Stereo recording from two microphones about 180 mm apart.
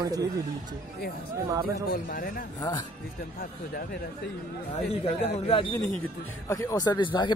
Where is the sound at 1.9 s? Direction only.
50° left (ahead or behind).